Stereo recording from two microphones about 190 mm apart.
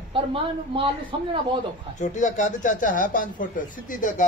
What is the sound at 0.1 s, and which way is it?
A woman's voice, 30° right (ahead or behind).